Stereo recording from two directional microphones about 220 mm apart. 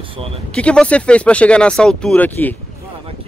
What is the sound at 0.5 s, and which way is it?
Speech, 5° left (ahead or behind).